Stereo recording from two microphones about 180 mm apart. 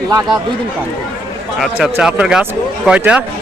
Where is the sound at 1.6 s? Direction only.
5° right (ahead or behind).